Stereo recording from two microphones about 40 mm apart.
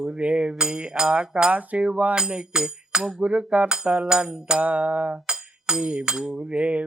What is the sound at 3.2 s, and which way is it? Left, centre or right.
Music, right.